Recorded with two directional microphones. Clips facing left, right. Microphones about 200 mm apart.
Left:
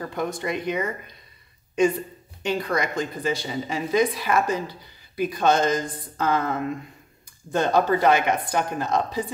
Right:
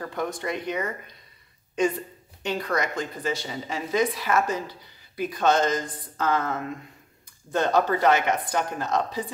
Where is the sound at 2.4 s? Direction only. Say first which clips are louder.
Left 2 dB; 10° left (ahead or behind).